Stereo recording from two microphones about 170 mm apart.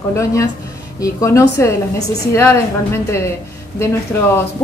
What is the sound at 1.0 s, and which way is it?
A woman's voice, 20° left (ahead or behind).